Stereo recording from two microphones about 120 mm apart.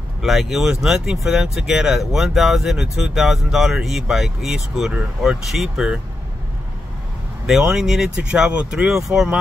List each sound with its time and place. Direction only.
0.2 s speech: centre (ahead or behind)
7.4 s speech: 5° right (ahead or behind)